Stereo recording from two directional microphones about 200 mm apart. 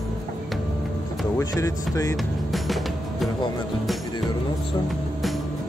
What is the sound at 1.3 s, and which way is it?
Speech, 15° left (ahead or behind).